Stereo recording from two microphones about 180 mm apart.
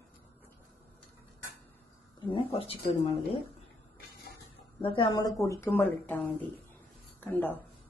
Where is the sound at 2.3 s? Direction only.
30° left (ahead or behind).